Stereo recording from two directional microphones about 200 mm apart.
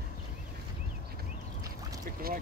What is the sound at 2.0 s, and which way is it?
Boat, 50° right (ahead or behind).